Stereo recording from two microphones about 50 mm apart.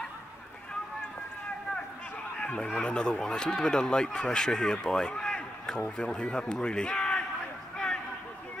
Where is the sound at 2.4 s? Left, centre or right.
Centre.